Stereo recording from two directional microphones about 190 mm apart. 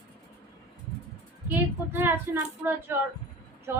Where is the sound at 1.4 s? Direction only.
10° right (ahead or behind).